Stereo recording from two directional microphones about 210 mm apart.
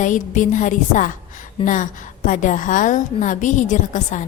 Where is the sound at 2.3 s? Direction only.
40° left (ahead or behind).